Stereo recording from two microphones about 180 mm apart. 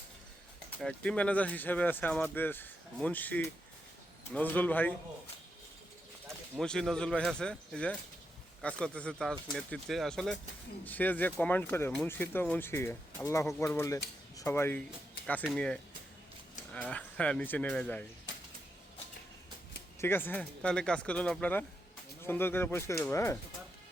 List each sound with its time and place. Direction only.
0.8 s speech: 5° left (ahead or behind)
6.6 s speech: 5° left (ahead or behind)
20.0 s speech: 10° left (ahead or behind)